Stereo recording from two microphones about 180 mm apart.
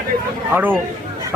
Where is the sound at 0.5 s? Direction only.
10° right (ahead or behind).